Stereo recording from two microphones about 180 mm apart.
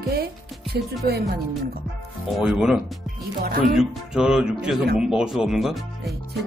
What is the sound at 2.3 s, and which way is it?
Speech, centre (ahead or behind).